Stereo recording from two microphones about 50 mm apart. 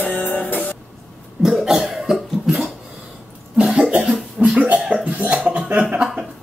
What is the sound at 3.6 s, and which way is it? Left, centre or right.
Cough, centre.